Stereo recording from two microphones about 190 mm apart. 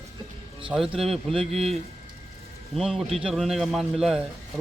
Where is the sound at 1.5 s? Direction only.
30° right (ahead or behind).